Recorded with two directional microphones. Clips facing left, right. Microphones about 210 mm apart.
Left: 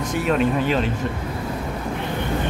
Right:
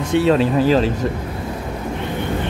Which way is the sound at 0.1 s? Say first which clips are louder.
Right 6 dB; 30° right (ahead or behind).